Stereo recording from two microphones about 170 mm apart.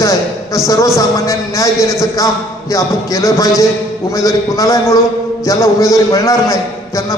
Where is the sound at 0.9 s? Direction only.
20° left (ahead or behind).